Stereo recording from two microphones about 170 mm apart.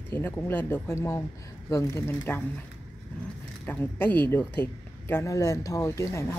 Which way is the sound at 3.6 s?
10° left (ahead or behind).